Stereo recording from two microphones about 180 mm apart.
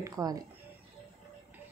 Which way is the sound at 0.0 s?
20° right (ahead or behind).